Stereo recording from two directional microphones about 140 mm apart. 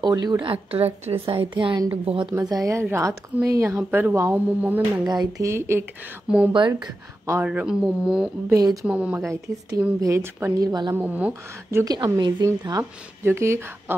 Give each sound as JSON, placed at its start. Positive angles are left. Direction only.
{"t": 0.0, "sound": "a woman's voice", "side_deg": -25}
{"t": 2.5, "sound": "a woman's voice", "side_deg": -20}
{"t": 5.0, "sound": "a woman's voice", "side_deg": -30}
{"t": 6.2, "sound": "speech", "side_deg": -5}
{"t": 6.7, "sound": "a woman's voice", "side_deg": -20}
{"t": 7.4, "sound": "speech", "side_deg": -5}
{"t": 8.5, "sound": "a woman's voice", "side_deg": -25}
{"t": 8.8, "sound": "a woman's voice", "side_deg": -10}
{"t": 11.0, "sound": "speech", "side_deg": -10}
{"t": 11.8, "sound": "a woman's voice", "side_deg": -30}